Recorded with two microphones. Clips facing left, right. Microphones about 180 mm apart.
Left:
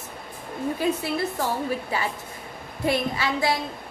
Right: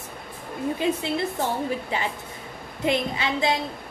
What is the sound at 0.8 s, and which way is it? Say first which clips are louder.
A woman's voice: even; 20° right (ahead or behind).